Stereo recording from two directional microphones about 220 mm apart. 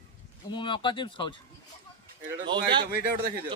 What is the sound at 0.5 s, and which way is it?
Speech, 20° left (ahead or behind).